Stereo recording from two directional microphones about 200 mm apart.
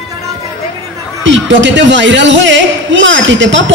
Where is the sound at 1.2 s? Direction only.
65° right (ahead or behind).